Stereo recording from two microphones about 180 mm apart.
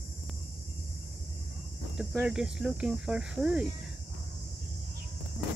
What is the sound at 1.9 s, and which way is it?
Cricket, 5° right (ahead or behind).